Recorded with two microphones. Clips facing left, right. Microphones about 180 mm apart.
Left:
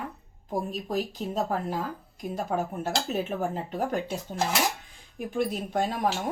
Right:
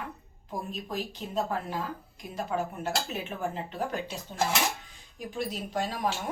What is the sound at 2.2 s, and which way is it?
Speech, 40° left (ahead or behind).